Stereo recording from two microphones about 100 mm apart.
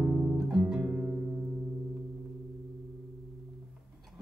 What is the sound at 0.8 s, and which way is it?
Music, 20° right (ahead or behind).